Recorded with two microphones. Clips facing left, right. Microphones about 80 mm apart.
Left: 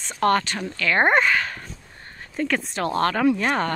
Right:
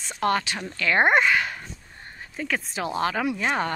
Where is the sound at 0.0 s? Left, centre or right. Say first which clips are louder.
Left 4 dB; centre.